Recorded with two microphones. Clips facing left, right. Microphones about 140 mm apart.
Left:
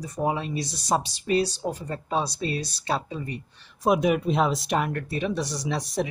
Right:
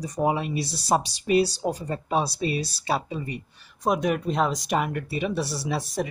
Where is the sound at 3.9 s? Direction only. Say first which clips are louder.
Left 2 dB; 5° left (ahead or behind).